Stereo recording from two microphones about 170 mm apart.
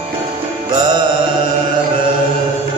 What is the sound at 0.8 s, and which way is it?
Music, 25° right (ahead or behind).